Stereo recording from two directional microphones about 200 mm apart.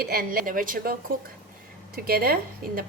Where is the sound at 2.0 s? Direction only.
50° right (ahead or behind).